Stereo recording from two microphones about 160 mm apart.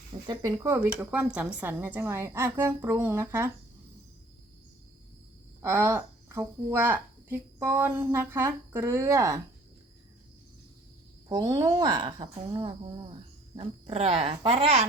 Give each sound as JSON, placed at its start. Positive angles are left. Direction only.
{"t": 0.3, "sound": "a woman's voice", "side_deg": -20}
{"t": 5.6, "sound": "a woman's voice", "side_deg": -15}
{"t": 11.3, "sound": "speech", "side_deg": -20}